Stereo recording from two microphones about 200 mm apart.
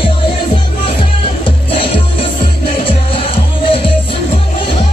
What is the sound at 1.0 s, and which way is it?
Music, 25° left (ahead or behind).